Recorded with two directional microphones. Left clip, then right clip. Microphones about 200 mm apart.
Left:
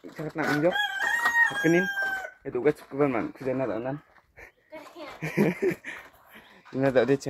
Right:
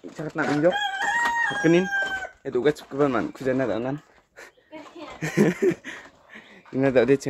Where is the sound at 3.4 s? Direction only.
25° right (ahead or behind).